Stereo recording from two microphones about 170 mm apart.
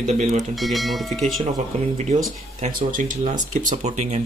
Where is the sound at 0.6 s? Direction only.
Centre (ahead or behind).